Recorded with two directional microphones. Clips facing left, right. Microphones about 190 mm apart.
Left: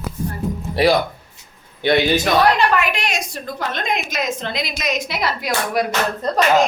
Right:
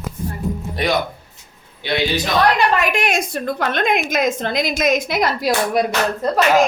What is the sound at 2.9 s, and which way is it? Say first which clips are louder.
A woman's voice: right 5 dB; 50° right (ahead or behind).